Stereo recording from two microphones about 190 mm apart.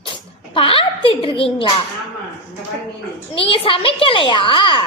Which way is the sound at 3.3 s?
30° left (ahead or behind).